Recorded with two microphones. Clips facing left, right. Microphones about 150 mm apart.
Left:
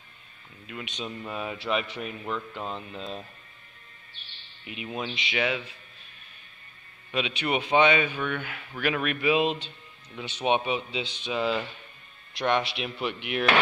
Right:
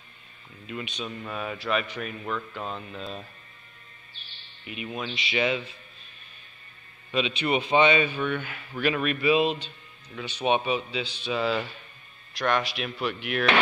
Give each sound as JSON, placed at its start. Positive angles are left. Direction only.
{"t": 0.8, "sound": "a man's voice", "side_deg": 20}
{"t": 5.0, "sound": "a man's voice", "side_deg": 10}
{"t": 7.1, "sound": "a man's voice", "side_deg": 10}